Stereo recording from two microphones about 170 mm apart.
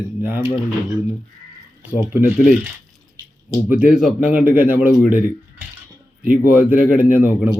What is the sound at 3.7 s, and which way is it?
Speech, 5° right (ahead or behind).